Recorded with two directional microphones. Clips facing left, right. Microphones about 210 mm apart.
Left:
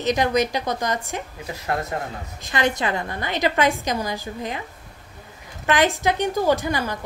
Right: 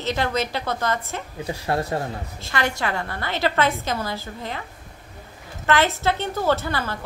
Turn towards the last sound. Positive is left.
turn(degrees=15)  # may be behind; listen again after turning